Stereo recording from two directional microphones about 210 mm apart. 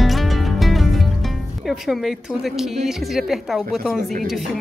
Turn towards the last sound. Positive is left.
turn(degrees=-45)  # may be behind; listen again after turning